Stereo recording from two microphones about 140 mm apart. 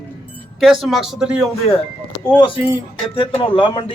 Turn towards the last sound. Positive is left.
turn(degrees=40)  # may be behind; listen again after turning